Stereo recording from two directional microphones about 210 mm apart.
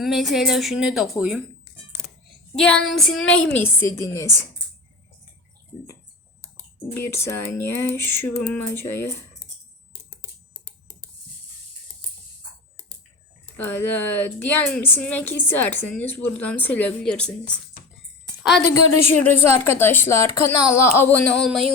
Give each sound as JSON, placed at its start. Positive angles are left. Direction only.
{"t": 0.0, "sound": "speech", "side_deg": 0}
{"t": 2.6, "sound": "a woman's voice", "side_deg": 5}
{"t": 6.9, "sound": "a woman's voice", "side_deg": 10}
{"t": 13.6, "sound": "a woman's voice", "side_deg": 10}
{"t": 19.1, "sound": "a woman's voice", "side_deg": 10}